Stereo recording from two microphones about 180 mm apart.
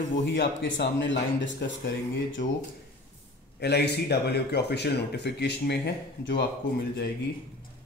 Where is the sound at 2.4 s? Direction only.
75° left (ahead or behind).